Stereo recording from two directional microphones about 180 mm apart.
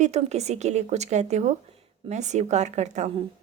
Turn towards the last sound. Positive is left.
turn(degrees=-40)  # may be behind; listen again after turning